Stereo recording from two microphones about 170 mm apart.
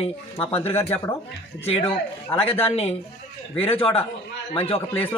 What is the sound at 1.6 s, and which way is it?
Speech, 35° left (ahead or behind).